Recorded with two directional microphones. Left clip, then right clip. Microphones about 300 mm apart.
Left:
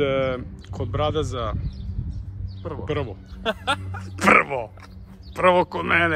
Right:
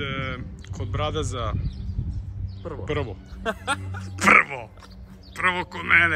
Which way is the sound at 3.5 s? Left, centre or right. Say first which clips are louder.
Left 3 dB; left.